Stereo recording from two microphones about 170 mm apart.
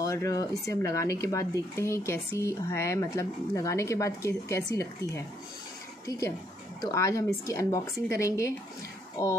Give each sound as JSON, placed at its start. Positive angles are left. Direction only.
{"t": 0.0, "sound": "speech", "side_deg": 20}